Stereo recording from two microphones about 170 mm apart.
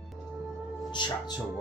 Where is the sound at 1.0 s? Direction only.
25° left (ahead or behind).